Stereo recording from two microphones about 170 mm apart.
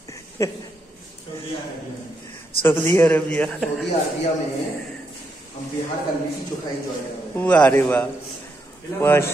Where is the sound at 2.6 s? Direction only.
10° left (ahead or behind).